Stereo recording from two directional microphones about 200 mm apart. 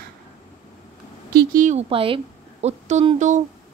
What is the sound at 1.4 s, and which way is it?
A woman's voice, 40° right (ahead or behind).